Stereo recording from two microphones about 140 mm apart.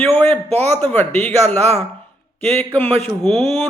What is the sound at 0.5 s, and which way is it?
Speech, 50° right (ahead or behind).